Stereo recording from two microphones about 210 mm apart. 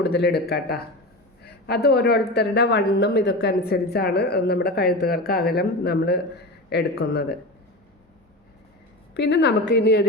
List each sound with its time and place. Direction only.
0.0 s speech: 50° left (ahead or behind)
9.1 s a woman's voice: 55° left (ahead or behind)